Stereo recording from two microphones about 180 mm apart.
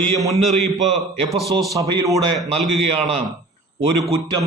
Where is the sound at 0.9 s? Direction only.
Centre (ahead or behind).